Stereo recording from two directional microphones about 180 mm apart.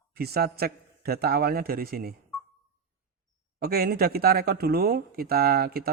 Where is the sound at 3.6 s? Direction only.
60° right (ahead or behind).